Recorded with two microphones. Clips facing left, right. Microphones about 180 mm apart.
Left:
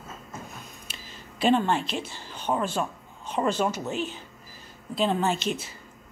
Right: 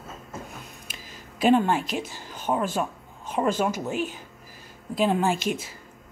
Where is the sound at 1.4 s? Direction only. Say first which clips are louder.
Right 2 dB; 10° right (ahead or behind).